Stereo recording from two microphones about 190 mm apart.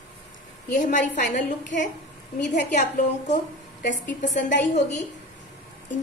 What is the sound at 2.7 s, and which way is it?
A woman's voice, 40° left (ahead or behind).